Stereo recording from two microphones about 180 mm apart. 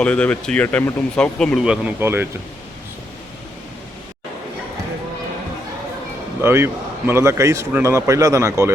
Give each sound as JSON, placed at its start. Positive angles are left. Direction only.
{"t": 0.0, "sound": "speech", "side_deg": 5}
{"t": 6.4, "sound": "a man's voice", "side_deg": -15}